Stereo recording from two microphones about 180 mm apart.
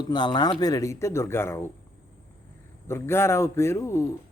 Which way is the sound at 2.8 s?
15° left (ahead or behind).